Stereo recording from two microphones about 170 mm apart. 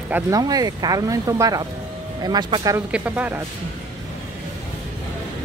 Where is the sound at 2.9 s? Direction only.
10° right (ahead or behind).